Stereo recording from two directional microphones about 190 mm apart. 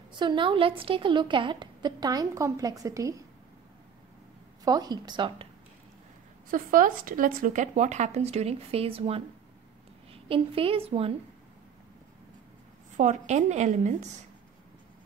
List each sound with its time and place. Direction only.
0.1 s a woman's voice: 25° right (ahead or behind)
4.6 s a woman's voice: 20° right (ahead or behind)
6.5 s a woman's voice: 45° right (ahead or behind); by 11.1 s 30° right (ahead or behind)
12.9 s speech: 40° right (ahead or behind)